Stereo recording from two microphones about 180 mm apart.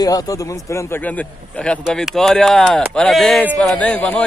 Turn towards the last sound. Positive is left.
turn(degrees=5)  # may be behind; listen again after turning